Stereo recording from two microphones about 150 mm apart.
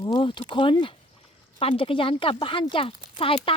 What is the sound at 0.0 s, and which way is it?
Speech, 30° left (ahead or behind).